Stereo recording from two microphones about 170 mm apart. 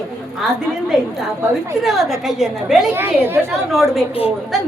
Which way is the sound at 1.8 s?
Centre (ahead or behind).